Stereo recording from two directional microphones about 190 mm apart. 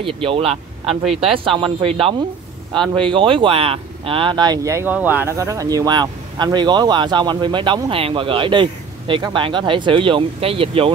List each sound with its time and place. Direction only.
0.0 s speech: 30° right (ahead or behind)